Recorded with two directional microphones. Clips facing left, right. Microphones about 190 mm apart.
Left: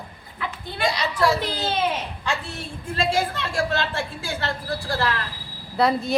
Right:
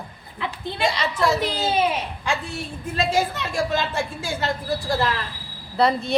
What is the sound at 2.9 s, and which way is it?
A woman's voice, 15° right (ahead or behind).